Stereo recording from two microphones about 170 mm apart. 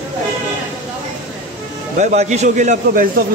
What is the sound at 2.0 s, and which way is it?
A man's voice, 40° right (ahead or behind).